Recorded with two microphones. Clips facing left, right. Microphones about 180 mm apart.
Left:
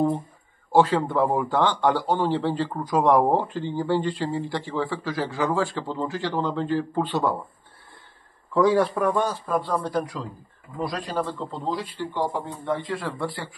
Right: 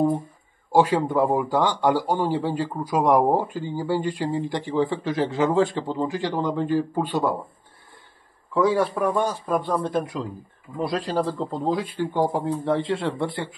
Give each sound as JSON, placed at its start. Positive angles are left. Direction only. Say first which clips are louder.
{"t": 0.7, "sound": "a man's voice", "louder": "even", "side_deg": -10}
{"t": 8.5, "sound": "a man's voice", "louder": "left 1 dB", "side_deg": 0}
{"t": 9.0, "sound": "a man's voice", "louder": "even", "side_deg": -15}